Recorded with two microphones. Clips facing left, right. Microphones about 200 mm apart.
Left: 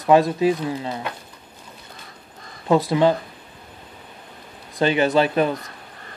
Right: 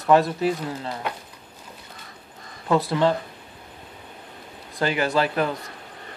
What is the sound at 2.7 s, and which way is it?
Speech, 15° left (ahead or behind).